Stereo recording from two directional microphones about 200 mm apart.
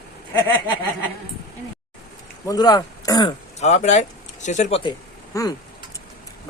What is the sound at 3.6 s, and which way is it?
Speech, 35° left (ahead or behind).